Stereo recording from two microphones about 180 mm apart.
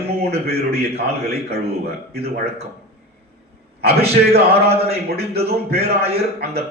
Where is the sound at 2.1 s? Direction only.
60° right (ahead or behind).